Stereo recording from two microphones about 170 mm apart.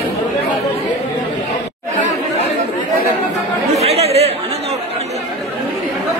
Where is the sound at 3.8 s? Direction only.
35° right (ahead or behind).